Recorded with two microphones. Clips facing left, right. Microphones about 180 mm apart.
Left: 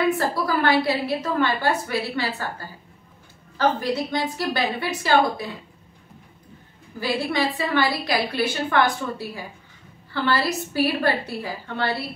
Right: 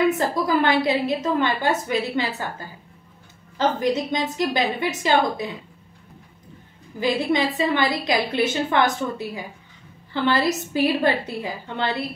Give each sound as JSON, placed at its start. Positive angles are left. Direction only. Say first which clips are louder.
{"t": 0.2, "sound": "a woman's voice", "louder": "right 2 dB", "side_deg": -20}
{"t": 3.5, "sound": "a woman's voice", "louder": "right 1 dB", "side_deg": -20}
{"t": 7.0, "sound": "a woman's voice", "louder": "right 3 dB", "side_deg": -20}